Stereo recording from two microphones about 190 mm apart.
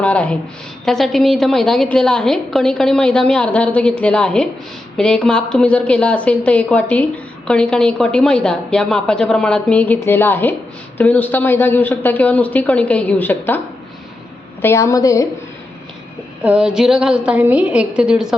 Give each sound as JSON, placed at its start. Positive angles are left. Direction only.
{"t": 0.0, "sound": "a woman's voice", "side_deg": 5}
{"t": 14.6, "sound": "speech", "side_deg": 15}
{"t": 16.4, "sound": "a woman's voice", "side_deg": -5}